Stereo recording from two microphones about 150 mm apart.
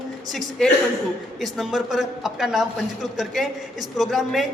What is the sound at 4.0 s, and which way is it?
Speech, centre (ahead or behind).